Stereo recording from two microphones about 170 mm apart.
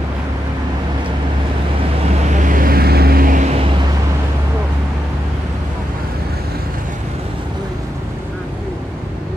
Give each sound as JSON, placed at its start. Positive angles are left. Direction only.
{"t": 2.4, "sound": "vehicle", "side_deg": -55}